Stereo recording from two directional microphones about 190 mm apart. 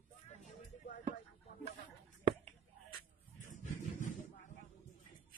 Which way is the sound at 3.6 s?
40° left (ahead or behind).